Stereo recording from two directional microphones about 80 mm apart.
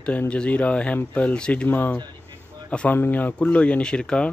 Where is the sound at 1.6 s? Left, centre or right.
Left.